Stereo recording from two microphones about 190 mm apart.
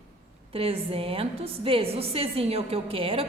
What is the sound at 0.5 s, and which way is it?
A woman's voice, 30° right (ahead or behind).